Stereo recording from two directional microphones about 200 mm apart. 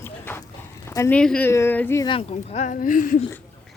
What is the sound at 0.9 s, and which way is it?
Speech, 10° left (ahead or behind).